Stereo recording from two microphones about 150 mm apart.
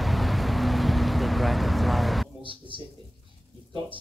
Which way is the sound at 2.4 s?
35° right (ahead or behind).